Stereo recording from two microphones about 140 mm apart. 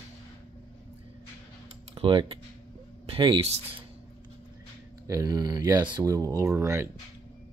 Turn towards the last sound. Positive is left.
turn(degrees=-20)  # may be behind; listen again after turning